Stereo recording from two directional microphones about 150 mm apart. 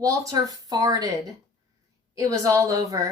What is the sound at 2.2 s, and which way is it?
Speech, 20° right (ahead or behind).